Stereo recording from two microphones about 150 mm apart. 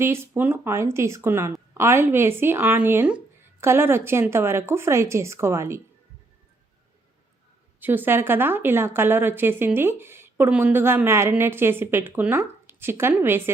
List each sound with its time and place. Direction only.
0.0 s speech: 15° right (ahead or behind)
7.8 s speech: 15° right (ahead or behind)